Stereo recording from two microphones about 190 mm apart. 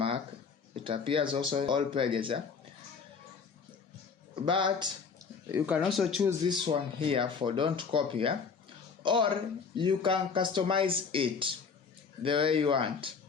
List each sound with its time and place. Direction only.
0.9 s speech: 25° right (ahead or behind)
4.4 s speech: 25° right (ahead or behind)
5.5 s speech: 10° right (ahead or behind)
6.7 s speech: 30° right (ahead or behind)